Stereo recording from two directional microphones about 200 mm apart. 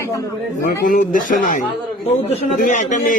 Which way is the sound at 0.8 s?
40° left (ahead or behind).